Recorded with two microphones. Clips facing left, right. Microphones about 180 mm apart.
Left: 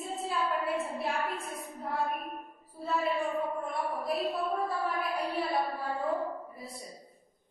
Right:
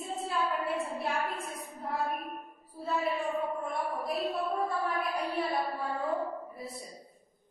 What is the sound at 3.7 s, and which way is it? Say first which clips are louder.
A woman's voice: left 1 dB; centre (ahead or behind).